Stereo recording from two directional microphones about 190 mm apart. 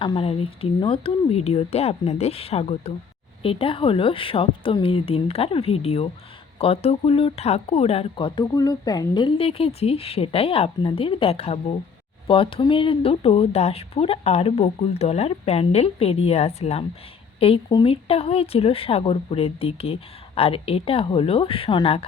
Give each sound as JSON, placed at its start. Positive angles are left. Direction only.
{"t": 0.0, "sound": "speech", "side_deg": 25}